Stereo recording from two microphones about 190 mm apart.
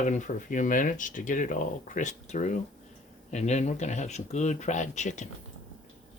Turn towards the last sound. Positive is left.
turn(degrees=40)  # may be behind; listen again after turning